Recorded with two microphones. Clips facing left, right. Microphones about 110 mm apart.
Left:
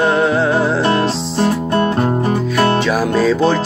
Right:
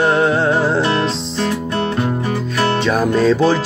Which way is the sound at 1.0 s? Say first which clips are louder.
Left 3 dB; 40° left (ahead or behind).